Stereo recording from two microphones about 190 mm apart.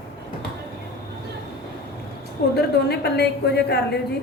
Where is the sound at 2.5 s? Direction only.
60° left (ahead or behind).